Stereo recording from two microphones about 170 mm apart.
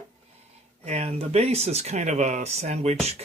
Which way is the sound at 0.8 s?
40° right (ahead or behind).